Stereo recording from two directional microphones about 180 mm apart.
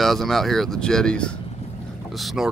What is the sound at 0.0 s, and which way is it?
Speech, centre (ahead or behind).